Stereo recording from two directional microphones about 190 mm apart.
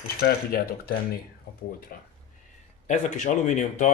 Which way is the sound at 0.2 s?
50° left (ahead or behind).